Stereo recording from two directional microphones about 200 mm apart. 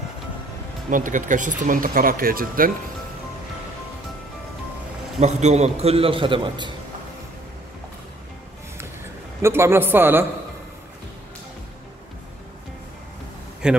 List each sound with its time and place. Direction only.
0.8 s speech: 40° right (ahead or behind)
5.2 s a man's voice: 35° right (ahead or behind)
9.4 s a man's voice: 10° right (ahead or behind)
13.6 s a man's voice: 5° right (ahead or behind)